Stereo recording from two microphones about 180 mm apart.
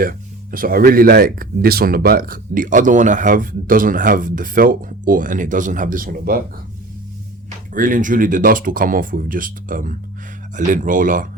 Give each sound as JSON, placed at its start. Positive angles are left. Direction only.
{"t": 0.0, "sound": "speech", "side_deg": -50}
{"t": 7.7, "sound": "speech", "side_deg": -50}